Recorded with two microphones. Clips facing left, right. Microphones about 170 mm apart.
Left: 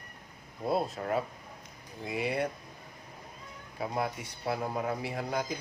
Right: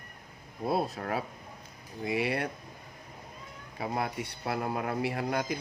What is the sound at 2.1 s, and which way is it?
Speech, 70° right (ahead or behind).